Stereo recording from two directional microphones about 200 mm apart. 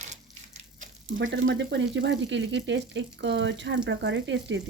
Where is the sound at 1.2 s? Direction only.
75° right (ahead or behind).